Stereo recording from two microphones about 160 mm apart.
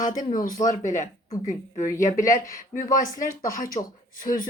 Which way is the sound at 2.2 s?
55° left (ahead or behind).